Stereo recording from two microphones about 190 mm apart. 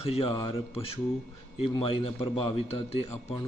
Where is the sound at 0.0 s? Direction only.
30° left (ahead or behind).